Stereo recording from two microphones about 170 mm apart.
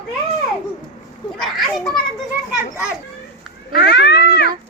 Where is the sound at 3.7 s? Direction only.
75° left (ahead or behind).